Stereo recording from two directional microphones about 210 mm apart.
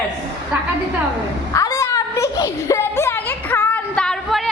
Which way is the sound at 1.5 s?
15° left (ahead or behind).